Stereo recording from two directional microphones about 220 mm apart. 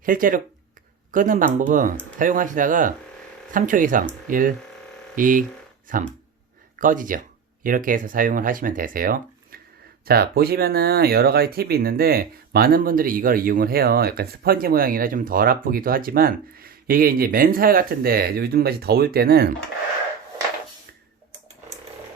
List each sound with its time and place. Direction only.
0.0 s speech: 40° right (ahead or behind)